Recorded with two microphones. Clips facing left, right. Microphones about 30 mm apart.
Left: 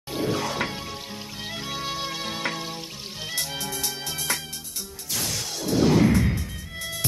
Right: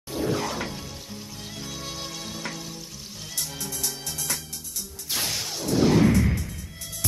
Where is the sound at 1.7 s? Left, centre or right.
Left.